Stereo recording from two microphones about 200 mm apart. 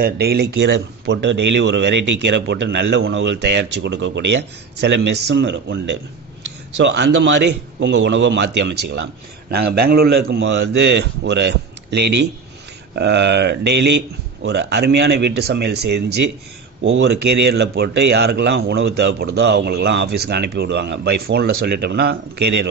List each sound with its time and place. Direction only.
0.0 s a man's voice: 50° right (ahead or behind)